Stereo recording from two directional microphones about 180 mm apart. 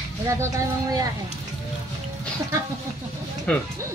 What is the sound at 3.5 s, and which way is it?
Speech, 10° left (ahead or behind).